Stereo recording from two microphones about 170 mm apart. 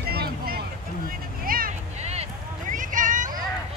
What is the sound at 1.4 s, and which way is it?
Vehicle, 55° right (ahead or behind).